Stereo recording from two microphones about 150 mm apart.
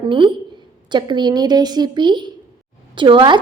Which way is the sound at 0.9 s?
30° right (ahead or behind).